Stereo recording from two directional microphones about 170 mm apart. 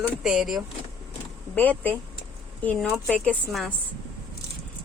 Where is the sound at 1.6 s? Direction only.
10° left (ahead or behind).